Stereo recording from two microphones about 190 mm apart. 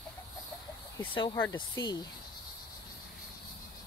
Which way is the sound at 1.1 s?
25° left (ahead or behind).